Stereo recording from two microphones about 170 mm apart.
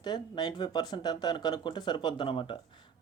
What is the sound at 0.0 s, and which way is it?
Speech, 25° left (ahead or behind).